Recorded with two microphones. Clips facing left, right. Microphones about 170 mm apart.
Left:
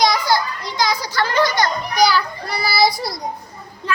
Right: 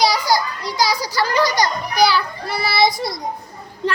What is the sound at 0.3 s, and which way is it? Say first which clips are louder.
Children playing: even; 35° right (ahead or behind).